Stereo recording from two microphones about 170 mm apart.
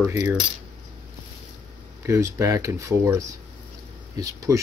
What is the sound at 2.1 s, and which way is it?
Speech, 15° right (ahead or behind).